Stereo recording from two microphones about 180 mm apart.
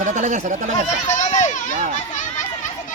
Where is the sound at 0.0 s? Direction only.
45° right (ahead or behind).